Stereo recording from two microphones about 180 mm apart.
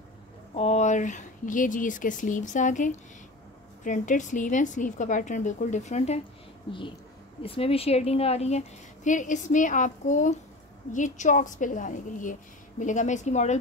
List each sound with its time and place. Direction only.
0.6 s a woman's voice: 35° left (ahead or behind)
7.4 s a woman's voice: 30° left (ahead or behind)